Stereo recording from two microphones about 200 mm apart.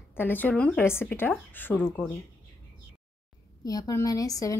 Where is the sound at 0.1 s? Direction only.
10° left (ahead or behind).